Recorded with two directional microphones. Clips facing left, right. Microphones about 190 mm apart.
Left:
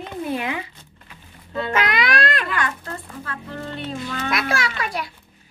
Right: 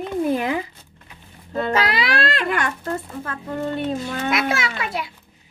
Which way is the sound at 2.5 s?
50° right (ahead or behind).